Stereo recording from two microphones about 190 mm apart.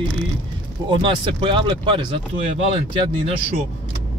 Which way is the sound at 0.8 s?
25° right (ahead or behind).